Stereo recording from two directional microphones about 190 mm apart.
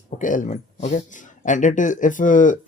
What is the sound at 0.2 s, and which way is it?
Speech, 45° left (ahead or behind).